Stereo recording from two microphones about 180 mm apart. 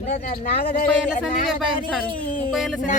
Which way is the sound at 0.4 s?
55° left (ahead or behind).